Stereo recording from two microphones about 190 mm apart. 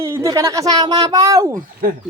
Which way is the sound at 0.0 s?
15° right (ahead or behind).